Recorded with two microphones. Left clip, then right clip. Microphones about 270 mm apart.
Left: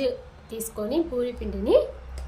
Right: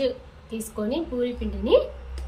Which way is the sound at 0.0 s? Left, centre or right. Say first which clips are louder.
Right 1 dB; left.